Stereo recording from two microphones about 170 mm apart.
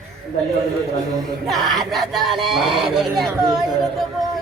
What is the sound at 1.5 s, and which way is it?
Speech, centre (ahead or behind).